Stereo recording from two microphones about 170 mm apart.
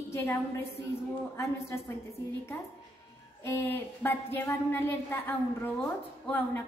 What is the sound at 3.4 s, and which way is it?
A woman's voice, 15° left (ahead or behind).